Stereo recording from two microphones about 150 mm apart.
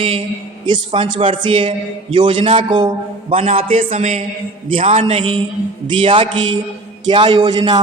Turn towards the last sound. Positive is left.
turn(degrees=-30)  # may be behind; listen again after turning